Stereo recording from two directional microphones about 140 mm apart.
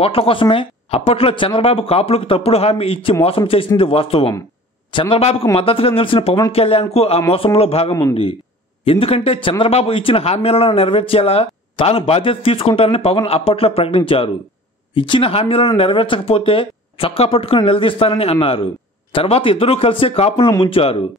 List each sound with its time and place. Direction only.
0.0 s a man's voice: 40° left (ahead or behind)